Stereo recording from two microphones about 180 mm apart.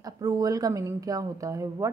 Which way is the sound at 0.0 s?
20° right (ahead or behind).